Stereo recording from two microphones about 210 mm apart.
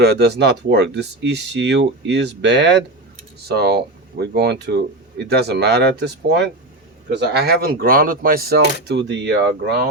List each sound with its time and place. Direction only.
0.0 s speech: 50° right (ahead or behind)